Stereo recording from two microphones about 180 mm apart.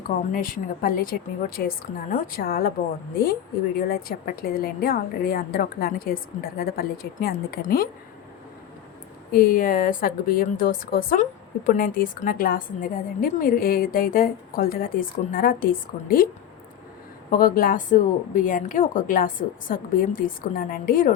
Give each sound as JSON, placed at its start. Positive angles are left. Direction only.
{"t": 0.3, "sound": "a woman's voice", "side_deg": 50}
{"t": 3.8, "sound": "a woman's voice", "side_deg": 55}
{"t": 9.3, "sound": "a woman's voice", "side_deg": 55}
{"t": 17.3, "sound": "a woman's voice", "side_deg": 55}